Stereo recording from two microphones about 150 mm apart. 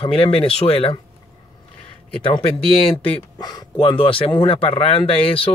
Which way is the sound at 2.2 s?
40° left (ahead or behind).